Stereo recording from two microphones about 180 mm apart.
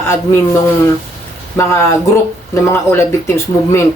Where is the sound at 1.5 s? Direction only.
15° left (ahead or behind).